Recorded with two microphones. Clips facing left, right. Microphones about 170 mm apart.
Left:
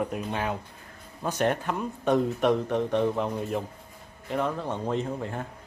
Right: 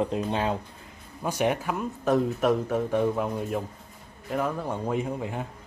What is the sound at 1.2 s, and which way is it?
Speech, 10° right (ahead or behind).